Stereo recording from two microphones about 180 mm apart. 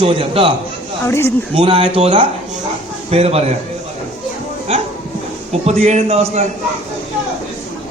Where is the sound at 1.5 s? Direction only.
30° right (ahead or behind).